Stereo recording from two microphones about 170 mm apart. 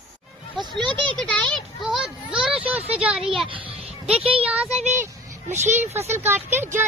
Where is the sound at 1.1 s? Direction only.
5° left (ahead or behind).